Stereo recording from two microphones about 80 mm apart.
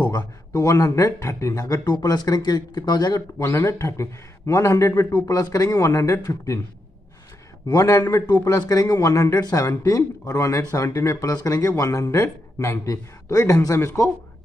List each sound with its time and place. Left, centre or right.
0.0 s speech: left
1.5 s speech: left
3.2 s speech: left
7.6 s speech: left